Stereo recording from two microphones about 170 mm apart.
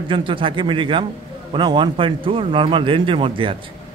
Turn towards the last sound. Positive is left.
turn(degrees=-30)  # may be behind; listen again after turning